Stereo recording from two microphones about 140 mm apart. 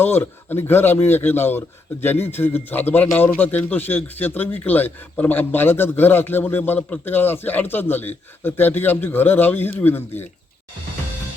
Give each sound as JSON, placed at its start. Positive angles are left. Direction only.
{"t": 0.0, "sound": "speech", "side_deg": 15}